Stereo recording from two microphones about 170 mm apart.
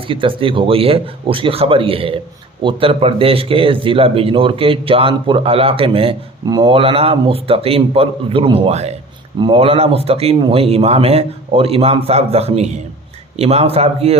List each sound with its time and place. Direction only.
0.1 s a man's voice: 30° right (ahead or behind)